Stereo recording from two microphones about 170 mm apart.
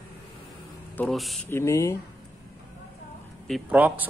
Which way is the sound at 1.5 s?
15° left (ahead or behind).